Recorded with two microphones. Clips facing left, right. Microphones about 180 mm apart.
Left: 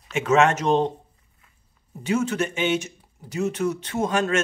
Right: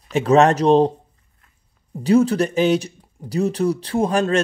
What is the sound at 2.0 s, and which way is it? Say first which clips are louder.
Speech: right 8 dB; 35° right (ahead or behind).